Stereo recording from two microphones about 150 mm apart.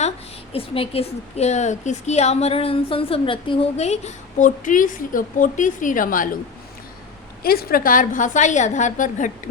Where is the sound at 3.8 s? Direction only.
50° left (ahead or behind); by 6.2 s 65° left (ahead or behind).